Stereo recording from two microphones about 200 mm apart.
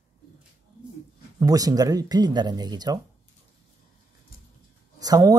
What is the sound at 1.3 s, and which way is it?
Speech, 20° right (ahead or behind).